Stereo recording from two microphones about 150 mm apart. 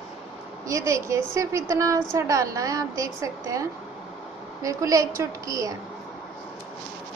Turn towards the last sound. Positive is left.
turn(degrees=-25)  # may be behind; listen again after turning